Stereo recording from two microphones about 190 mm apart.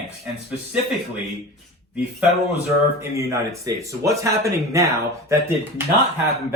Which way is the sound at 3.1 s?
15° right (ahead or behind).